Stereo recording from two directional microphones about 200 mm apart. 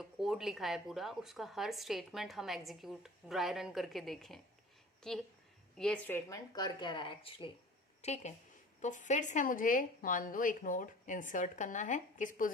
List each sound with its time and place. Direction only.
0.0 s a woman's voice: centre (ahead or behind); by 12.5 s 40° left (ahead or behind)